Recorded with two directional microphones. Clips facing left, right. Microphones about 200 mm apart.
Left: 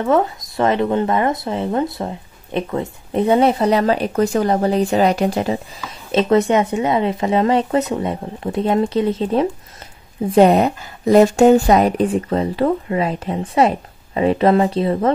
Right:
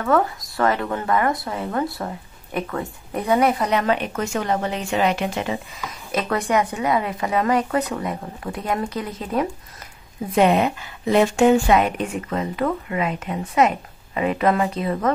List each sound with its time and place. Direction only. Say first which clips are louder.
0.0 s speech: left 3 dB; 20° left (ahead or behind); by 5.6 s 35° left (ahead or behind)
6.1 s speech: left 7 dB; 25° left (ahead or behind)